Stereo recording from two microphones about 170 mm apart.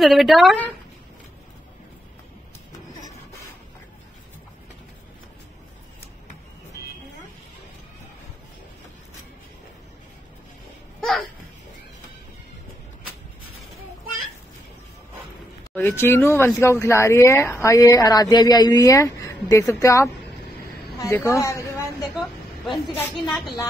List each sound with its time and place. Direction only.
0.0 s a woman's voice: centre (ahead or behind)
15.7 s speech: 15° left (ahead or behind)
23.1 s a woman's voice: centre (ahead or behind)